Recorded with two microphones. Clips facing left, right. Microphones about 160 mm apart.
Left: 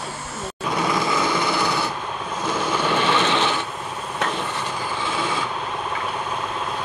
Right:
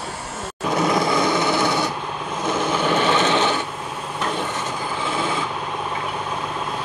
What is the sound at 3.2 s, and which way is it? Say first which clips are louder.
Sewing machine: right 2 dB; 20° right (ahead or behind).